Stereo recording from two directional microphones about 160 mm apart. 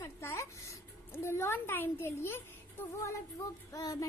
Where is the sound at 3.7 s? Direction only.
20° left (ahead or behind).